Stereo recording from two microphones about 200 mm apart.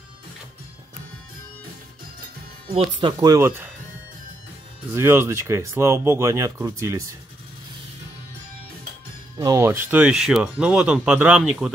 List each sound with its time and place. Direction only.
2.7 s speech: 30° right (ahead or behind); by 3.7 s 10° right (ahead or behind)
4.9 s speech: 10° right (ahead or behind)
9.4 s speech: 15° right (ahead or behind)